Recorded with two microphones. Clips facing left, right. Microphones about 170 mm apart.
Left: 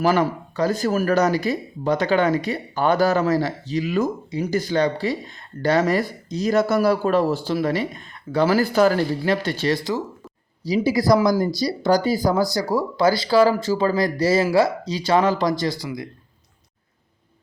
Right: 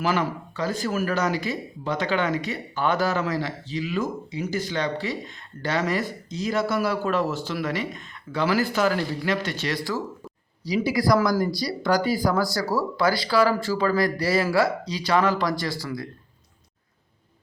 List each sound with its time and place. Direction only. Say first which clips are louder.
0.0 s speech: left 5 dB; 40° left (ahead or behind); by 16.0 s 15° left (ahead or behind)